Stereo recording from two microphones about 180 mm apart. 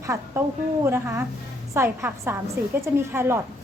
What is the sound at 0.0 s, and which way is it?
A woman's voice, 15° right (ahead or behind).